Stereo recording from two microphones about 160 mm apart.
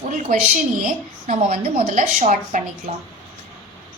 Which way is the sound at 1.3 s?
40° right (ahead or behind).